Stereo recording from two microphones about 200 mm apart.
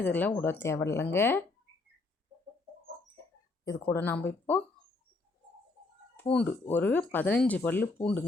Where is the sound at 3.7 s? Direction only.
15° left (ahead or behind).